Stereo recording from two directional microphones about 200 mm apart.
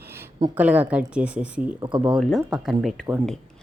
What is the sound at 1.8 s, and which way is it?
Speech, 20° right (ahead or behind).